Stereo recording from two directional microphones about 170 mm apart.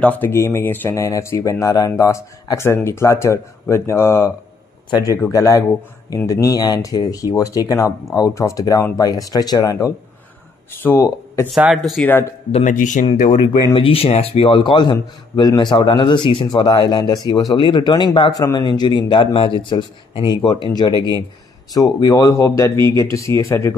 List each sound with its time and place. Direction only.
0.0 s speech: 10° left (ahead or behind)
11.5 s speech: centre (ahead or behind)
11.9 s speech: 10° left (ahead or behind)
12.4 s speech: 35° left (ahead or behind)
12.7 s speech: 50° left (ahead or behind)
13.0 s speech: 35° left (ahead or behind)
20.9 s speech: 20° right (ahead or behind)
21.7 s speech: 20° left (ahead or behind)